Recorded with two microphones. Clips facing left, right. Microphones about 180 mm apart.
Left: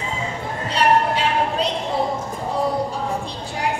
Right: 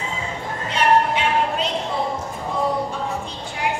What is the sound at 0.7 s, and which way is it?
Music, 35° left (ahead or behind).